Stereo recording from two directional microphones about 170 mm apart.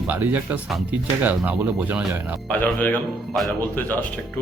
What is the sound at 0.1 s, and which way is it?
Speech, 10° right (ahead or behind).